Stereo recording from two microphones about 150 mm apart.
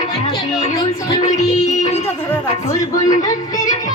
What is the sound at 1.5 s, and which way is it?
Music, 50° left (ahead or behind).